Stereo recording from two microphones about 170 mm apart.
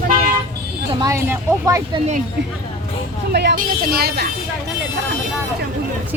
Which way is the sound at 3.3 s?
70° right (ahead or behind).